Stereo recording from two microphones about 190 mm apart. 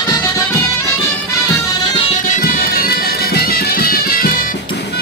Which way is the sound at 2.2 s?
45° left (ahead or behind).